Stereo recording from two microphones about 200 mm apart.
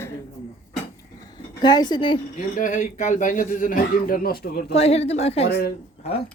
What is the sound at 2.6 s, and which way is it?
Speech, 40° left (ahead or behind).